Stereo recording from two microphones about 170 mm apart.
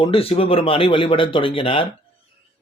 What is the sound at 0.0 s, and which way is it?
A man's voice, 35° left (ahead or behind).